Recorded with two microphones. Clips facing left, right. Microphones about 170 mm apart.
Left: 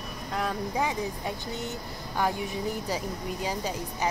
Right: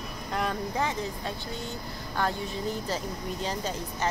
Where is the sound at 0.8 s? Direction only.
15° left (ahead or behind).